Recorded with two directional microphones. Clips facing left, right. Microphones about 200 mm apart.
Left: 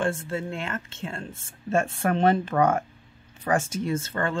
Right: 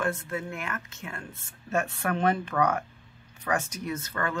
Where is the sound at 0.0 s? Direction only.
30° left (ahead or behind).